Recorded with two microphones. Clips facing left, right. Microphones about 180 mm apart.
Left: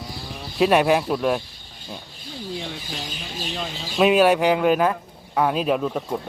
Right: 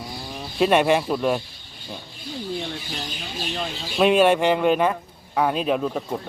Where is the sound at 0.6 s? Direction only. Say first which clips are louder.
Left 1 dB; centre (ahead or behind).